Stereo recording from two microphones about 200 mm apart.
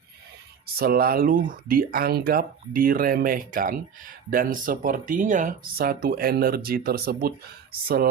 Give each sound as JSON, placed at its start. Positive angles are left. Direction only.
{"t": 0.8, "sound": "speech", "side_deg": -50}